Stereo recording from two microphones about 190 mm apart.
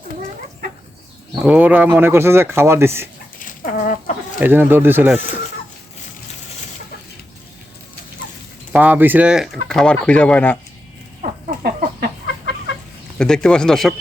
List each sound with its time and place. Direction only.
1.4 s speech: 5° right (ahead or behind)
3.3 s chicken: 45° left (ahead or behind)
4.4 s speech: 10° right (ahead or behind)
8.7 s speech: 10° right (ahead or behind); by 10.6 s 5° left (ahead or behind)
11.2 s a sound: 55° right (ahead or behind)
13.1 s speech: 5° left (ahead or behind)